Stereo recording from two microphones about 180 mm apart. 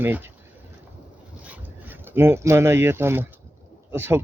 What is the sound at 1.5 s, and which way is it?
Speech, 10° right (ahead or behind).